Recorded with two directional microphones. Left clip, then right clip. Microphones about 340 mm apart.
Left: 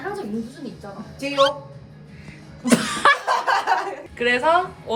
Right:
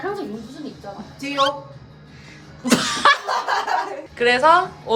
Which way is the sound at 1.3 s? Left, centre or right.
Centre.